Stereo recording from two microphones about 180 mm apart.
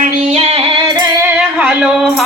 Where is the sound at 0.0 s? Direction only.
35° right (ahead or behind).